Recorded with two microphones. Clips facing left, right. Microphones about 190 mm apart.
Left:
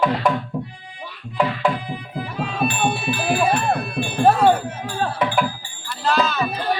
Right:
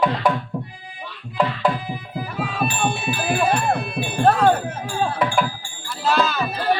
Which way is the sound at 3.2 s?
5° left (ahead or behind).